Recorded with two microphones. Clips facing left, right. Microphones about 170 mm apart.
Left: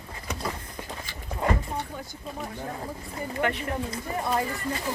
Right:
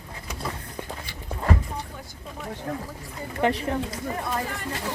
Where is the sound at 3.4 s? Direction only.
35° right (ahead or behind).